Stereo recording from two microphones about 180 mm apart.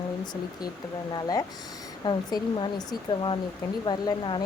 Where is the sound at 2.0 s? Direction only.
25° left (ahead or behind).